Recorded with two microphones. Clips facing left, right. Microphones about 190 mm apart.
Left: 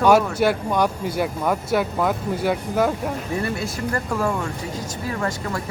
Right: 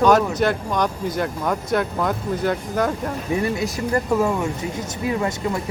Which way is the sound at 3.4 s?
20° right (ahead or behind).